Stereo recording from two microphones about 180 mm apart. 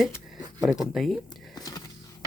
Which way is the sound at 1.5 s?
20° left (ahead or behind).